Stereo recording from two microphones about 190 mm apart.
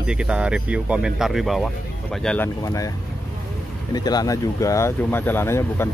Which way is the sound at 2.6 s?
20° left (ahead or behind).